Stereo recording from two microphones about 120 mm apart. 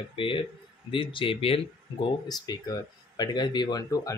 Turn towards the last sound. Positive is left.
turn(degrees=30)  # may be behind; listen again after turning